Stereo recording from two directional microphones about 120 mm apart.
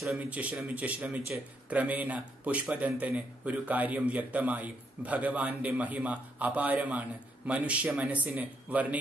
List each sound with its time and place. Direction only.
0.0 s a man's voice: 5° right (ahead or behind)